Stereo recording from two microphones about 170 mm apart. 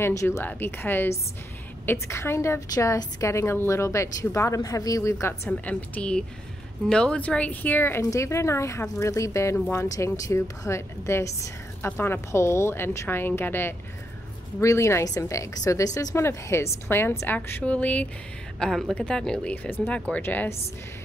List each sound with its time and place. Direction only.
0.0 s a woman's voice: 15° left (ahead or behind)